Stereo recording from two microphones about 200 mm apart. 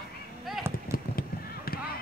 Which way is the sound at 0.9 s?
50° left (ahead or behind).